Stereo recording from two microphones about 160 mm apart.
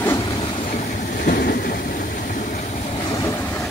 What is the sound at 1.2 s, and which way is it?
Train, 65° left (ahead or behind).